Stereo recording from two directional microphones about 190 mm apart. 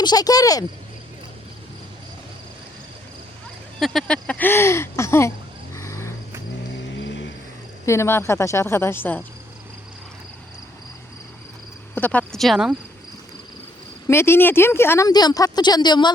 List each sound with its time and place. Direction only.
0.0 s speech: 20° left (ahead or behind)
3.8 s speech: centre (ahead or behind)
5.7 s vehicle: 15° left (ahead or behind)
6.9 s a sound: 75° left (ahead or behind)
7.9 s speech: 15° left (ahead or behind)
11.9 s speech: 10° left (ahead or behind)
14.1 s speech: 15° left (ahead or behind)